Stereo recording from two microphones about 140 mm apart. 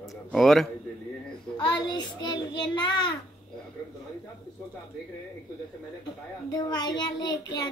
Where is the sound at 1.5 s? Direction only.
30° left (ahead or behind).